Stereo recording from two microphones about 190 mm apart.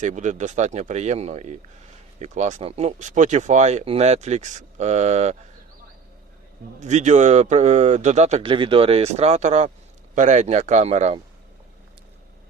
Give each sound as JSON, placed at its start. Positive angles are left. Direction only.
{"t": 0.0, "sound": "speech", "side_deg": -40}
{"t": 6.7, "sound": "speech", "side_deg": -40}